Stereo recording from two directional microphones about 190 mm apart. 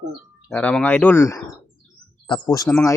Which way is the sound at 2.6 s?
5° left (ahead or behind).